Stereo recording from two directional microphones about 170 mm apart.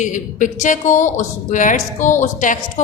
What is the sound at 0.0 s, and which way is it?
A woman's voice, 45° left (ahead or behind).